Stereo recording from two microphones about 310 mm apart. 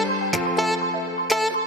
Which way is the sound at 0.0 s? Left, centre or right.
Centre.